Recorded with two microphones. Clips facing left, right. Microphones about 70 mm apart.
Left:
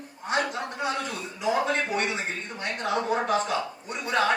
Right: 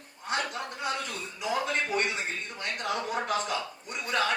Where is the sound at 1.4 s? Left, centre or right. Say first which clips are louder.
Left 5 dB; left.